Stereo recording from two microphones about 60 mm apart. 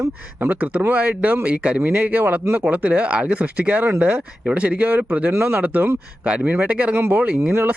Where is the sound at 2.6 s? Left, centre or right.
Right.